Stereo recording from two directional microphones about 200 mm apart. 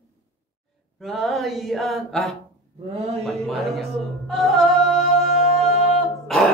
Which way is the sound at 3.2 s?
Centre (ahead or behind).